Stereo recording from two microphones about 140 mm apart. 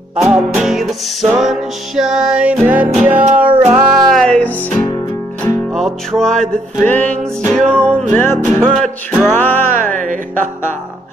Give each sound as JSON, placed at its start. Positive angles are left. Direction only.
{"t": 0.1, "sound": "music", "side_deg": -5}
{"t": 4.1, "sound": "music", "side_deg": 5}
{"t": 9.8, "sound": "music", "side_deg": -65}